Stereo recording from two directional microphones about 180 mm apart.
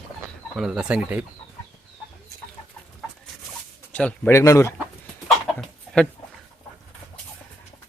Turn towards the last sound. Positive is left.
turn(degrees=5)  # may be behind; listen again after turning